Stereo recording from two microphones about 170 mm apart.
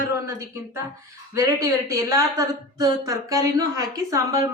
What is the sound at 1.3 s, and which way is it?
Speech, 15° right (ahead or behind).